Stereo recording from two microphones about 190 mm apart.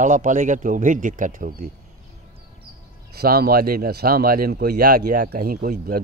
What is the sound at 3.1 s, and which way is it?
Speech, 55° right (ahead or behind).